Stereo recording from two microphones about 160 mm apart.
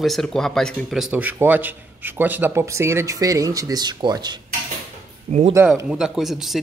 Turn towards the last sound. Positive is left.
turn(degrees=0)  # may be behind; listen again after turning